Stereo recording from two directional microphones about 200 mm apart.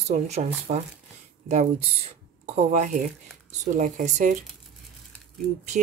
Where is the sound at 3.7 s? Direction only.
40° right (ahead or behind).